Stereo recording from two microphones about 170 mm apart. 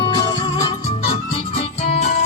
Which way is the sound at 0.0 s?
25° left (ahead or behind).